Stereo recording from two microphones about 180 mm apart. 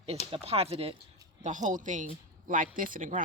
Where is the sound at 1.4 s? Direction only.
45° right (ahead or behind).